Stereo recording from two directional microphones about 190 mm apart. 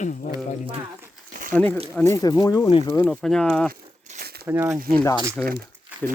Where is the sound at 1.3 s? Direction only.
45° right (ahead or behind).